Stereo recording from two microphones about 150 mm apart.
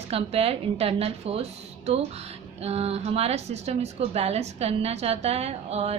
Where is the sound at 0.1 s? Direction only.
40° right (ahead or behind).